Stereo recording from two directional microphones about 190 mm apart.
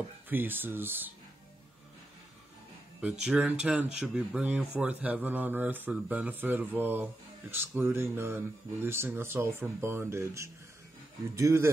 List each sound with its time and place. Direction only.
0.3 s speech: 10° right (ahead or behind)
3.0 s speech: 5° right (ahead or behind)